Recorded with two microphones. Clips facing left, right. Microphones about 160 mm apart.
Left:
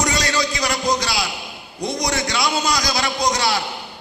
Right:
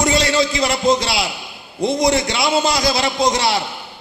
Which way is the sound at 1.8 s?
25° right (ahead or behind).